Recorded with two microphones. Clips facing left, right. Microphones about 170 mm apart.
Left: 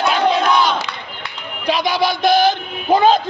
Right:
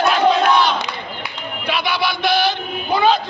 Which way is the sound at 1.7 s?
40° left (ahead or behind).